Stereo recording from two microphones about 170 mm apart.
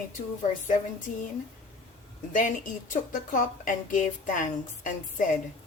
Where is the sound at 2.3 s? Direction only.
50° left (ahead or behind).